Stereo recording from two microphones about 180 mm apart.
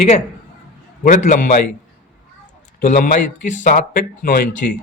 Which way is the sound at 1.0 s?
45° left (ahead or behind).